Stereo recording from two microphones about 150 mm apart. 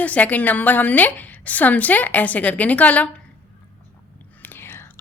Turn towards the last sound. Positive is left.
turn(degrees=15)  # may be behind; listen again after turning